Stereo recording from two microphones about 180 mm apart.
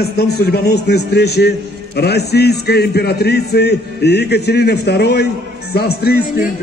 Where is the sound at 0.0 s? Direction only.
65° left (ahead or behind).